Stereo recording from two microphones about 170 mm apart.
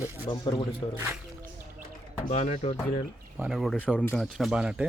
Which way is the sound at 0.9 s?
10° right (ahead or behind).